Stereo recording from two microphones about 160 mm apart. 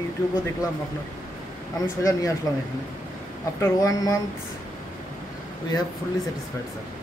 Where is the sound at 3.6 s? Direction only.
20° left (ahead or behind).